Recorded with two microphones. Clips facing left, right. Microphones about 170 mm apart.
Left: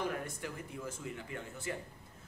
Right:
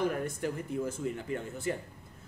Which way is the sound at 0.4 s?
40° right (ahead or behind).